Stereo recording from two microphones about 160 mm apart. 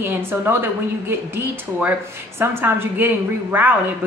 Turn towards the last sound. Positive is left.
turn(degrees=-10)  # may be behind; listen again after turning